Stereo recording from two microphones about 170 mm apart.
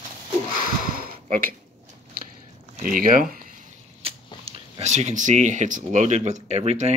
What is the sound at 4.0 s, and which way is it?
Speech, 35° right (ahead or behind).